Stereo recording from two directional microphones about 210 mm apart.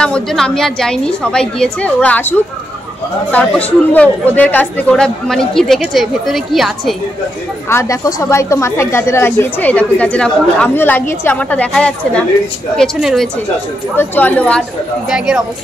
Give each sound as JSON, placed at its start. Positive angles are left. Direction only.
{"t": 0.0, "sound": "a woman's voice", "side_deg": 5}
{"t": 7.7, "sound": "a woman's voice", "side_deg": 15}